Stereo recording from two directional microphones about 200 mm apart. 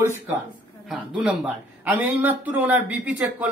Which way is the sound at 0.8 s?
5° right (ahead or behind).